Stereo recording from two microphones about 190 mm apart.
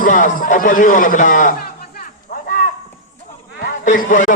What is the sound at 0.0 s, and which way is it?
A man's voice, 45° left (ahead or behind).